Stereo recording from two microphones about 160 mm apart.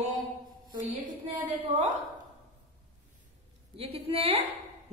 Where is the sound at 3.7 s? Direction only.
35° right (ahead or behind).